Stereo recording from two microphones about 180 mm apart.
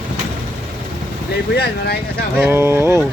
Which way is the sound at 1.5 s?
60° left (ahead or behind).